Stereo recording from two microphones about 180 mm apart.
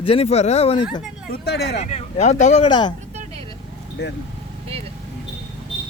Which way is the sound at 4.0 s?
70° left (ahead or behind).